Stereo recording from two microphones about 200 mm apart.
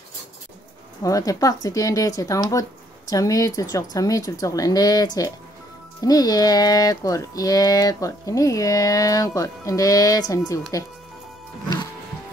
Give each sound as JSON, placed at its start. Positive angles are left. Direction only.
{"t": 1.0, "sound": "speech", "side_deg": 15}